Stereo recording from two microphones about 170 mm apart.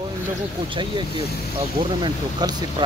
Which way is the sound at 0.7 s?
30° right (ahead or behind).